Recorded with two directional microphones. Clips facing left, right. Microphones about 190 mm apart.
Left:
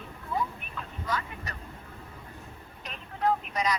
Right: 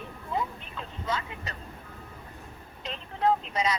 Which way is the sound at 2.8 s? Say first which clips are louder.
Right 2 dB; 25° right (ahead or behind).